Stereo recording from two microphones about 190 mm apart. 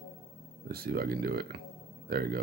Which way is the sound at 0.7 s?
55° right (ahead or behind).